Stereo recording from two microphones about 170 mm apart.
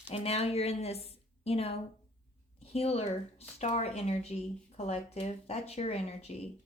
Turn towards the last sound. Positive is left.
turn(degrees=40)  # may be behind; listen again after turning